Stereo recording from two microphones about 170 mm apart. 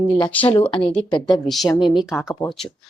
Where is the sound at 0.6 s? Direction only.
30° left (ahead or behind).